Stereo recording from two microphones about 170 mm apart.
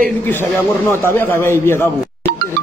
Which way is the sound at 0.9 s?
15° left (ahead or behind).